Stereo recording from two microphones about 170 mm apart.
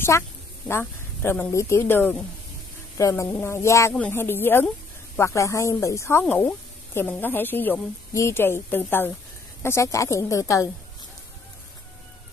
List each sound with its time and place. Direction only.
0.7 s speech: 15° left (ahead or behind)